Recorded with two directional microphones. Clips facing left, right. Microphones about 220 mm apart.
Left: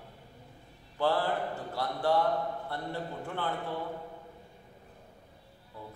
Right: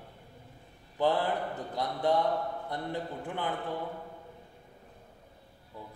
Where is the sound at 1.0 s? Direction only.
20° right (ahead or behind).